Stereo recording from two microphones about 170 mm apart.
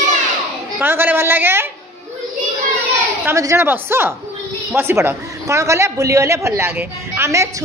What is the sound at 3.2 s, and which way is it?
A man's voice, 15° right (ahead or behind).